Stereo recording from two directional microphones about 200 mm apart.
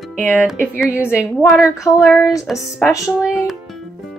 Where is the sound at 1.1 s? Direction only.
5° right (ahead or behind).